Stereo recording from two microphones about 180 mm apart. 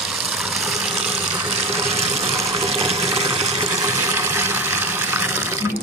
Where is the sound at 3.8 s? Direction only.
15° right (ahead or behind).